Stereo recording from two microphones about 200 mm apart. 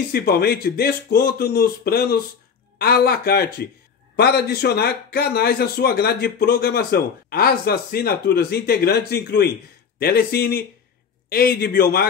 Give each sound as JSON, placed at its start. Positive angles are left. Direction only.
{"t": 0.1, "sound": "speech", "side_deg": 50}